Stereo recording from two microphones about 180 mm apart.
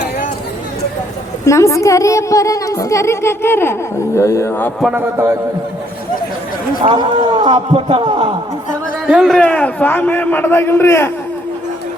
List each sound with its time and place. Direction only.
1.5 s speech: 15° left (ahead or behind)
4.8 s a man's voice: 5° right (ahead or behind)
6.8 s a man's voice: 30° right (ahead or behind)
9.0 s speech: centre (ahead or behind); by 11.1 s 15° left (ahead or behind)